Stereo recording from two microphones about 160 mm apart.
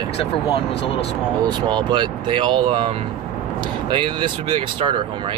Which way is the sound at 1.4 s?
30° right (ahead or behind).